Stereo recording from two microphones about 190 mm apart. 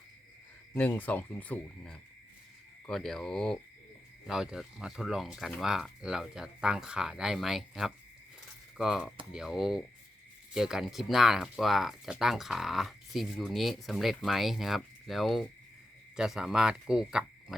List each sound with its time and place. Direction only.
0.7 s speech: 10° left (ahead or behind)